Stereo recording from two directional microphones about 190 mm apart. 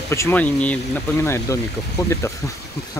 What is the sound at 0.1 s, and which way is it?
Speech, 10° left (ahead or behind).